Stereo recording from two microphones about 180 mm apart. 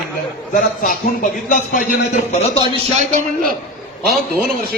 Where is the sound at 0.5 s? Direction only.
50° left (ahead or behind).